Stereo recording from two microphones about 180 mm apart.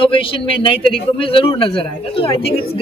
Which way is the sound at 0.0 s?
30° left (ahead or behind).